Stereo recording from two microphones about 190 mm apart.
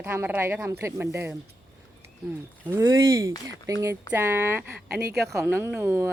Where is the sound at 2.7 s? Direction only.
15° right (ahead or behind).